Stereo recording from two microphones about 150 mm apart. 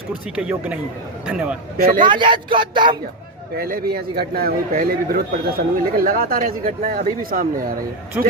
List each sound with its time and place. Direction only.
0.3 s a man's voice: 10° right (ahead or behind)
2.0 s speech: 30° right (ahead or behind)
3.6 s a man's voice: 85° right